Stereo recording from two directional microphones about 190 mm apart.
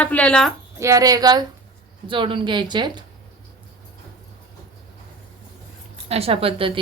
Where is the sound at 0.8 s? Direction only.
15° right (ahead or behind).